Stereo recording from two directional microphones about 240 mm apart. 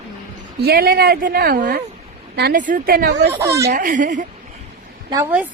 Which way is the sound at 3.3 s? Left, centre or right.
Centre.